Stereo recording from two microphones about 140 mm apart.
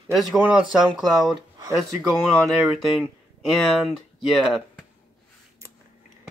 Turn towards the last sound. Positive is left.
turn(degrees=0)  # may be behind; listen again after turning